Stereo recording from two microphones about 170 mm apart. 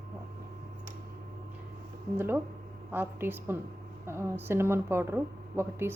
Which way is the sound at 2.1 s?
15° right (ahead or behind).